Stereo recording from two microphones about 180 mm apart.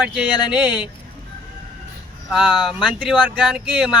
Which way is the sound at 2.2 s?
5° right (ahead or behind).